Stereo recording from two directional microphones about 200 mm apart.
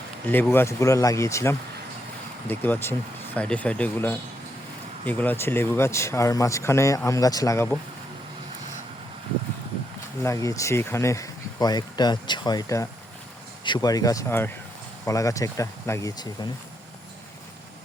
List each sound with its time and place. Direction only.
0.3 s speech: 10° left (ahead or behind)
10.2 s speech: 15° left (ahead or behind)